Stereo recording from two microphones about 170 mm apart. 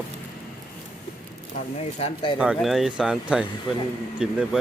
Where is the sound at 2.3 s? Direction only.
5° right (ahead or behind).